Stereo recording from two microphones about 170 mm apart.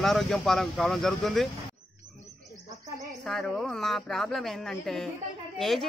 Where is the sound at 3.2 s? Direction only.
Centre (ahead or behind).